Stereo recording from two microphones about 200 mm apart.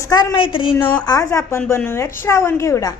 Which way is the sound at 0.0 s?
20° left (ahead or behind).